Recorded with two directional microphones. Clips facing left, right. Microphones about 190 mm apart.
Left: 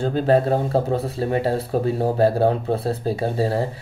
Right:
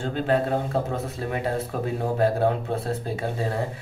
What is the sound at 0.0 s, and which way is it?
Speech, 35° left (ahead or behind).